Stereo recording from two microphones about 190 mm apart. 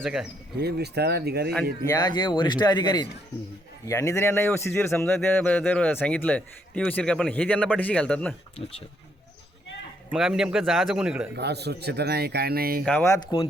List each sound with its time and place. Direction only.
0.0 s a man's voice: 5° right (ahead or behind)
0.5 s speech: 55° right (ahead or behind)
1.8 s a man's voice: 20° left (ahead or behind)
10.1 s a man's voice: 5° right (ahead or behind)
11.3 s speech: 60° right (ahead or behind)
12.8 s a man's voice: 10° left (ahead or behind)